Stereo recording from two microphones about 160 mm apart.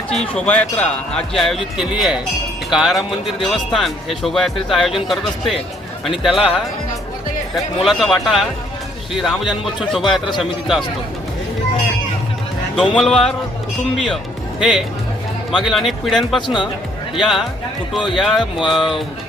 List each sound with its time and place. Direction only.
0.3 s speech: 10° left (ahead or behind)
12.7 s speech: 5° left (ahead or behind)